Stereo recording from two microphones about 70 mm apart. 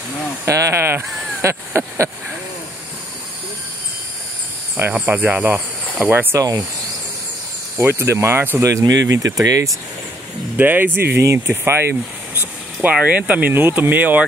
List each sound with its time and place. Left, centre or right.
0.5 s speech: right
4.9 s speech: centre
6.3 s speech: right
7.7 s speech: right
8.6 s speech: right
10.6 s speech: right
11.9 s a sound: right
12.9 s speech: centre